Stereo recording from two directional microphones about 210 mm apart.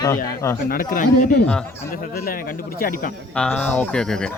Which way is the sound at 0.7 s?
40° left (ahead or behind).